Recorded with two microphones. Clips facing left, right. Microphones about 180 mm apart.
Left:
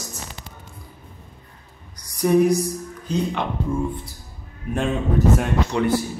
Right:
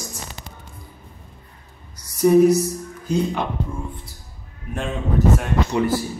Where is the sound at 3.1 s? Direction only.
10° right (ahead or behind).